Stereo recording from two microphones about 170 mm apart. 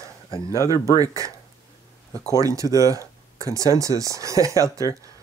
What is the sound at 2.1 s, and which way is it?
Speech, 20° left (ahead or behind).